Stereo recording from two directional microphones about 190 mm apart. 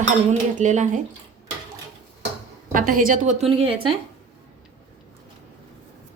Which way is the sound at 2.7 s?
45° right (ahead or behind).